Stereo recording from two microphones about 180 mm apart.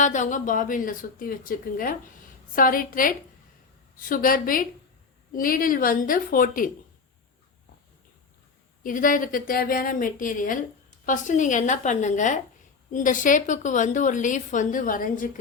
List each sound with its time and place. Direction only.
0.0 s a woman's voice: 45° left (ahead or behind)
8.8 s a woman's voice: 45° left (ahead or behind)